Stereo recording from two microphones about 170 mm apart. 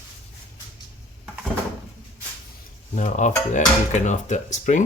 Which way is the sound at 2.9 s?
45° left (ahead or behind).